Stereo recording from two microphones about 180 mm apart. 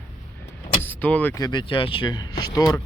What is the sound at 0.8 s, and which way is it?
Speech, 10° left (ahead or behind).